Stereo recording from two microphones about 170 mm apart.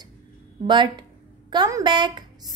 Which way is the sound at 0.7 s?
25° right (ahead or behind).